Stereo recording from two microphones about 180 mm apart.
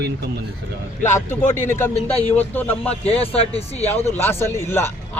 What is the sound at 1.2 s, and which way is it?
A man's voice, 15° left (ahead or behind).